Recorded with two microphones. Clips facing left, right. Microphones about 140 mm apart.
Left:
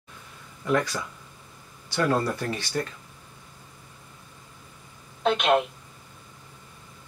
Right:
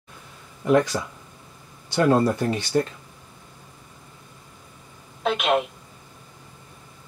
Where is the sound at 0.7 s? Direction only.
25° right (ahead or behind).